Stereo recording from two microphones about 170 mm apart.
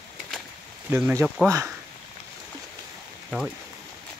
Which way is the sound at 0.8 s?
10° right (ahead or behind).